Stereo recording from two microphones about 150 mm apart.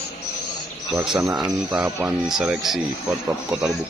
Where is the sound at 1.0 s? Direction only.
5° right (ahead or behind).